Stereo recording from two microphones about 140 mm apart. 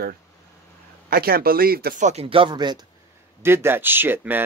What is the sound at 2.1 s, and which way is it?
Speech, 40° right (ahead or behind).